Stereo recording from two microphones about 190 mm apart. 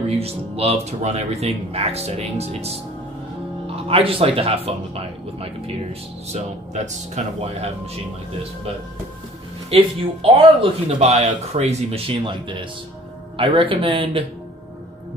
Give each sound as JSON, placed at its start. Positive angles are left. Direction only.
{"t": 0.1, "sound": "speech", "side_deg": -30}
{"t": 9.7, "sound": "speech", "side_deg": -30}